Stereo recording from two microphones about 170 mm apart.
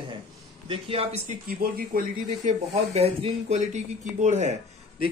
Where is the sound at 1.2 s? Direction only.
60° right (ahead or behind).